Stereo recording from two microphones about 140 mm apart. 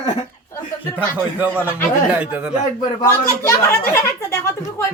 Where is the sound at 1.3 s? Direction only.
15° right (ahead or behind).